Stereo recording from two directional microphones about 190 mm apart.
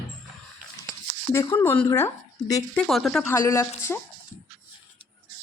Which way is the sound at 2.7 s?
Centre (ahead or behind).